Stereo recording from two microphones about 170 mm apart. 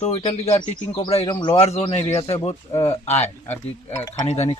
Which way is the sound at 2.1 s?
25° left (ahead or behind).